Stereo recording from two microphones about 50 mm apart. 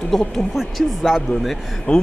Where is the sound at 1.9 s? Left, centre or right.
Left.